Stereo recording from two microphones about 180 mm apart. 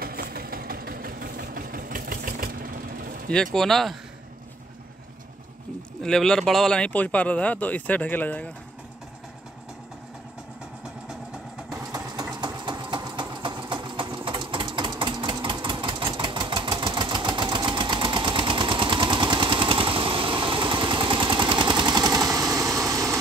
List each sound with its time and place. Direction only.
0.0 s engine: 55° right (ahead or behind)
3.5 s speech: centre (ahead or behind)
5.9 s speech: 5° left (ahead or behind)
11.7 s sewing machine: 20° right (ahead or behind)
22.8 s vehicle: 20° right (ahead or behind)